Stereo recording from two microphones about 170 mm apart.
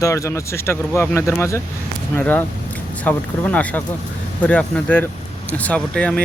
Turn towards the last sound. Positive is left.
turn(degrees=5)  # may be behind; listen again after turning